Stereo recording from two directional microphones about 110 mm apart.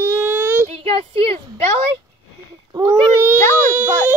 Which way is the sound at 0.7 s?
65° right (ahead or behind).